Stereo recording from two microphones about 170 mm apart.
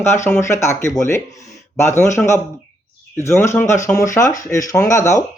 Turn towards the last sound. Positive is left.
turn(degrees=20)  # may be behind; listen again after turning